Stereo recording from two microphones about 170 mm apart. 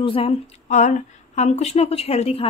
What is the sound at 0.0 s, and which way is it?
Speech, 30° left (ahead or behind).